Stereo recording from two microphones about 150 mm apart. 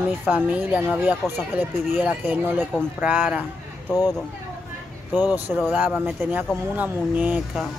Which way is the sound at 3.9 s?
25° left (ahead or behind).